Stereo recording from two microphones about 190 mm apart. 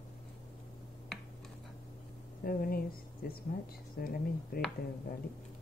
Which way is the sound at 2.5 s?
50° left (ahead or behind).